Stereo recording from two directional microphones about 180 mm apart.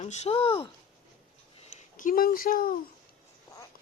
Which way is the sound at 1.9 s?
50° left (ahead or behind).